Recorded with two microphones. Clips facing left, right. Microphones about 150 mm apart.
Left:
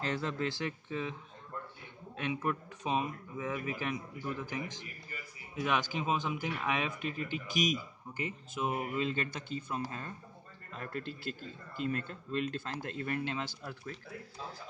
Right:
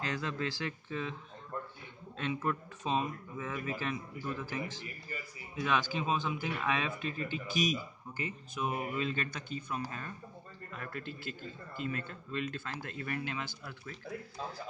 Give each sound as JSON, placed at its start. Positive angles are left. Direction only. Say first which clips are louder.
{"t": 0.0, "sound": "speech", "louder": "left 2 dB", "side_deg": 30}
{"t": 2.1, "sound": "speech", "louder": "even", "side_deg": 15}